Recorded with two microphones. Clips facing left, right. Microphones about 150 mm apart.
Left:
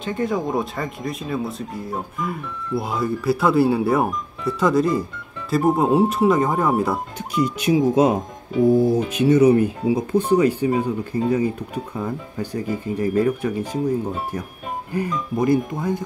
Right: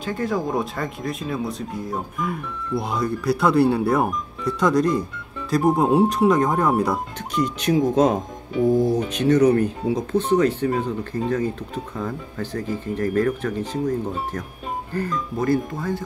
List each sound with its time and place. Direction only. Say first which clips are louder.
0.0 s speech: left 1 dB; centre (ahead or behind); by 16.0 s 15° left (ahead or behind)